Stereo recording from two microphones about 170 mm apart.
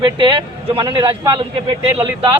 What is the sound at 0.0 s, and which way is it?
A man's voice, 25° right (ahead or behind).